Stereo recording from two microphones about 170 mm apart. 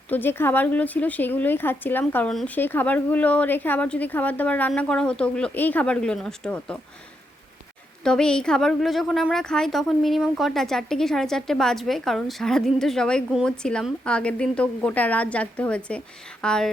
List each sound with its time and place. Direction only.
0.1 s speech: 10° left (ahead or behind)
8.0 s a woman's voice: 5° left (ahead or behind)